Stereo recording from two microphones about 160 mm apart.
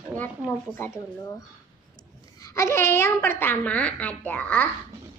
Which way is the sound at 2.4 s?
20° left (ahead or behind).